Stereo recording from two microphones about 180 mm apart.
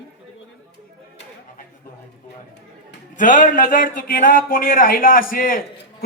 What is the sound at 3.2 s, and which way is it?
Speech, 45° left (ahead or behind).